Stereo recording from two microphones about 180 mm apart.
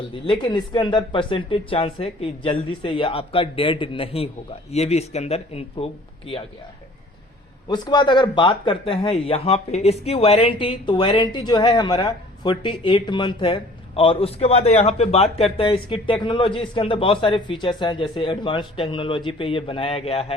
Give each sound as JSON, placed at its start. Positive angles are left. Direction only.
{"t": 0.1, "sound": "a man's voice", "side_deg": 25}
{"t": 7.7, "sound": "speech", "side_deg": 25}